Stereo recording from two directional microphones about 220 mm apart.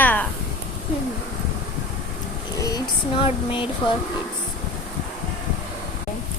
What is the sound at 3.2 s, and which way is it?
Speech, 20° left (ahead or behind).